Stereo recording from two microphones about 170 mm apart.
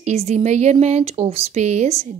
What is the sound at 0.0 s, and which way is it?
Speech, 40° right (ahead or behind).